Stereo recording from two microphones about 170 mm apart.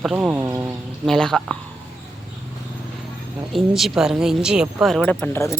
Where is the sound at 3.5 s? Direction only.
Centre (ahead or behind).